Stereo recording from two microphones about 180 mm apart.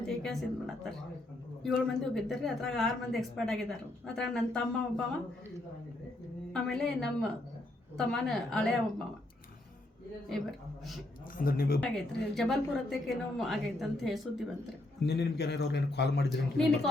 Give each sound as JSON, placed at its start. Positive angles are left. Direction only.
{"t": 0.0, "sound": "a sound", "side_deg": 0}
{"t": 1.6, "sound": "speech", "side_deg": 0}
{"t": 6.5, "sound": "speech", "side_deg": 5}
{"t": 10.2, "sound": "speech", "side_deg": 0}
{"t": 11.3, "sound": "a woman's voice", "side_deg": 55}
{"t": 11.8, "sound": "speech", "side_deg": 0}
{"t": 15.0, "sound": "a man's voice", "side_deg": 65}